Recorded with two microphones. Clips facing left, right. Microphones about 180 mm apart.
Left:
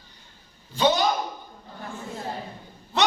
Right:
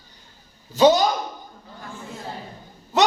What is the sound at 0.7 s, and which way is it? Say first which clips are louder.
Speech: right 7 dB; 40° right (ahead or behind).